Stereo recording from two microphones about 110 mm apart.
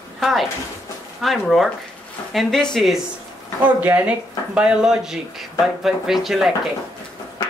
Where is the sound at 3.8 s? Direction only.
15° right (ahead or behind).